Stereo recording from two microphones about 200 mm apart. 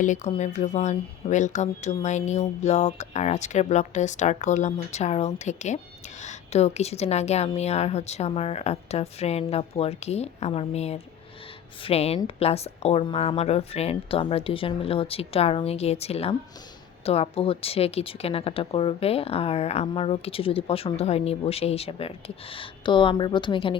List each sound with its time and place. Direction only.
0.0 s speech: 35° left (ahead or behind)